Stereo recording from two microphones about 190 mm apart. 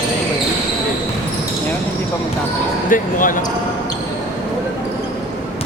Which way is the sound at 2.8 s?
45° left (ahead or behind).